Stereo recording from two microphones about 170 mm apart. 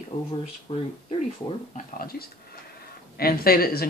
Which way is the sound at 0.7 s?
35° left (ahead or behind).